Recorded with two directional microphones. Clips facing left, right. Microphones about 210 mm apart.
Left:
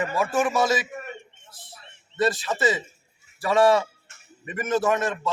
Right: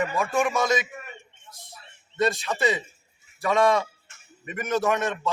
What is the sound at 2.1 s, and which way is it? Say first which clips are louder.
A man's voice: left 1 dB; centre (ahead or behind).